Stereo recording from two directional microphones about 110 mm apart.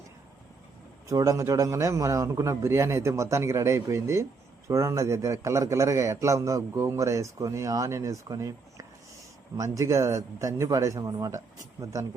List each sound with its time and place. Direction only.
1.0 s a man's voice: 30° right (ahead or behind)